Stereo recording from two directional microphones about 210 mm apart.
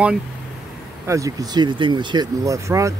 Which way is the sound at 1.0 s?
15° right (ahead or behind).